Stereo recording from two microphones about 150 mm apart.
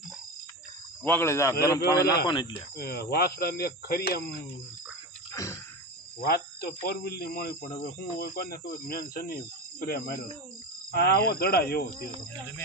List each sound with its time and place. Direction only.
1.0 s a man's voice: 15° left (ahead or behind); by 2.5 s 30° left (ahead or behind)
2.5 s speech: 90° left
5.3 s a sound: 20° left (ahead or behind)
6.2 s speech: 90° left